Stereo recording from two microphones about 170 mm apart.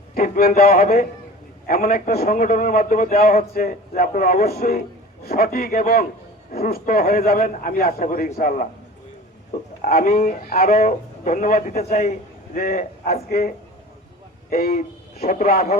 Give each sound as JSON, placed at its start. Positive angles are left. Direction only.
{"t": 0.1, "sound": "a man's voice", "side_deg": 60}
{"t": 9.8, "sound": "a man's voice", "side_deg": 50}
{"t": 15.2, "sound": "a man's voice", "side_deg": 55}